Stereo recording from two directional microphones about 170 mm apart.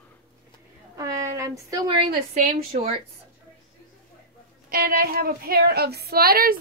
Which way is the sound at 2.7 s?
35° right (ahead or behind).